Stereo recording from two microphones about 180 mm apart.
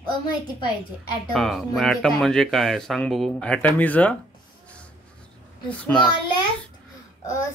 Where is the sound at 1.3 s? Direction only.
Centre (ahead or behind).